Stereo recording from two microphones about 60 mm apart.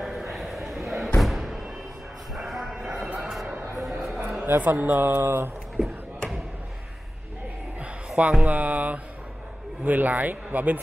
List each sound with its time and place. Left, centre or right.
0.0 s a sound: centre
0.8 s slam: centre
1.1 s thump: centre
2.3 s train: centre
3.2 s a sound: centre
4.6 s speech: right
8.2 s speech: right